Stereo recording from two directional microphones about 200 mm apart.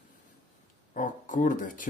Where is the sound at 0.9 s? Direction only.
40° left (ahead or behind).